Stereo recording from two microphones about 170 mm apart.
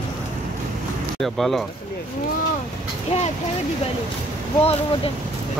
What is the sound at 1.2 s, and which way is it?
Speech, centre (ahead or behind).